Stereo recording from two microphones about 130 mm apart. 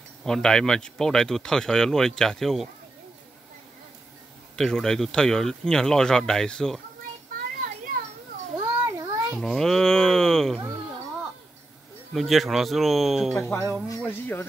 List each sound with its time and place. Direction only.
0.2 s speech: 5° left (ahead or behind)
4.6 s speech: 5° left (ahead or behind)
8.5 s a sound: 25° right (ahead or behind)
9.4 s speech: 5° left (ahead or behind)
12.1 s speech: centre (ahead or behind)
13.4 s speech: 25° left (ahead or behind)